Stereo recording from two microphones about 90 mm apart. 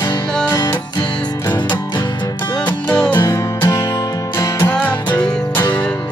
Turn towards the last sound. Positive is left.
turn(degrees=15)  # may be behind; listen again after turning